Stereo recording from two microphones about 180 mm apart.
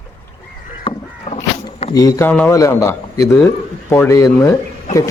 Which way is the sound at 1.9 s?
20° left (ahead or behind).